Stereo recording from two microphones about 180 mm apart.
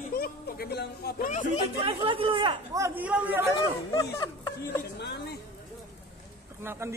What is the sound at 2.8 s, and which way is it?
Speech, 10° right (ahead or behind).